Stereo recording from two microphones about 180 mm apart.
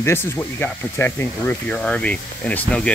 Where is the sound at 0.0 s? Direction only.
15° left (ahead or behind).